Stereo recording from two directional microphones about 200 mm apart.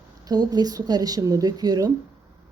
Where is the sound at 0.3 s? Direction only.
20° right (ahead or behind).